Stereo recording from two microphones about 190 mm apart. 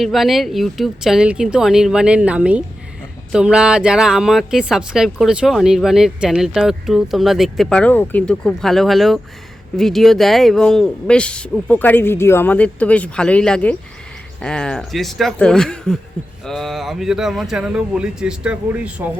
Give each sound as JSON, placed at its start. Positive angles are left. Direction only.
{"t": 0.0, "sound": "speech", "side_deg": 0}